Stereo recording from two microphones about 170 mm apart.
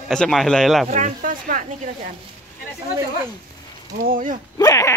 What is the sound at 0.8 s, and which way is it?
Speech, 50° right (ahead or behind).